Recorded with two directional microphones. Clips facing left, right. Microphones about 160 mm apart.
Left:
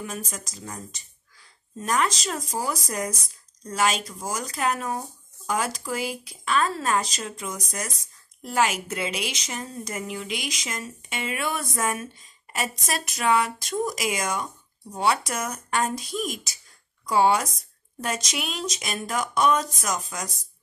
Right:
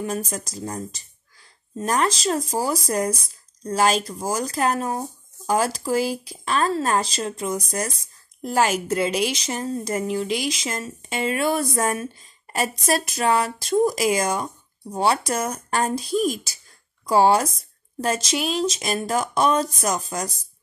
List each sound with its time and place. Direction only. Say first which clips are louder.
0.0 s a woman's voice: right 7 dB; 40° right (ahead or behind)